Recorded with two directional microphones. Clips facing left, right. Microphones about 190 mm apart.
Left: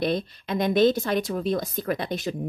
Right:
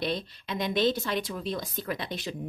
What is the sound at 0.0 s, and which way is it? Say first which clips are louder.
A woman's voice: left 6 dB; 50° left (ahead or behind).